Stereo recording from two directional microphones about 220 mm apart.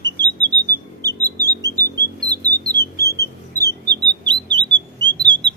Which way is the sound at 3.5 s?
20° right (ahead or behind).